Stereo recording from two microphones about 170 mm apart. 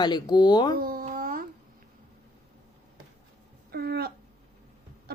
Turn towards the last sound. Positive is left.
turn(degrees=-70)  # may be behind; listen again after turning